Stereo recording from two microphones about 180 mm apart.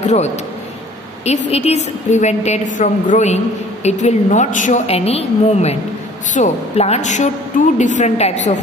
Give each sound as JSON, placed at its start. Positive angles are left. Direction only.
{"t": 0.0, "sound": "a man's voice", "side_deg": 40}
{"t": 1.5, "sound": "a woman's voice", "side_deg": 35}